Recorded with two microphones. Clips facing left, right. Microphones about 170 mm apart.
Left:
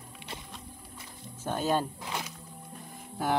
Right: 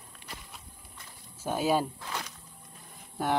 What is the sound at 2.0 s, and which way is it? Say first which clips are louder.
Music: left 1 dB; 15° left (ahead or behind).